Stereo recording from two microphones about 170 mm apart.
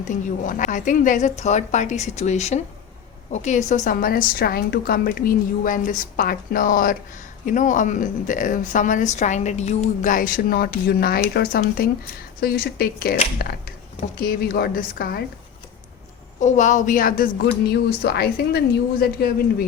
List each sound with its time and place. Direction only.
0.0 s a woman's voice: 50° left (ahead or behind)
16.4 s a woman's voice: 45° left (ahead or behind); by 19.6 s 60° left (ahead or behind)